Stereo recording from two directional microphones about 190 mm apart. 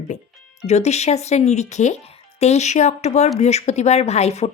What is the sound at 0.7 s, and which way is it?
Speech, 35° left (ahead or behind).